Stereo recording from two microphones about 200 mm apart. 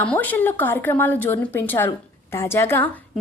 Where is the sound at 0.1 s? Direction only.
10° left (ahead or behind).